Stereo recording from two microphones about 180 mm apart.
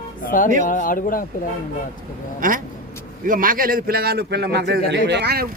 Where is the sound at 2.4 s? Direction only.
50° right (ahead or behind).